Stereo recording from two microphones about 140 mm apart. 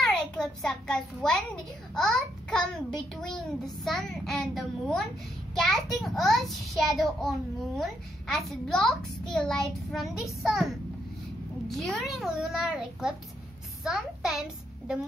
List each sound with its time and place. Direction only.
0.0 s a child's voice: centre (ahead or behind)
11.6 s a child's voice: centre (ahead or behind)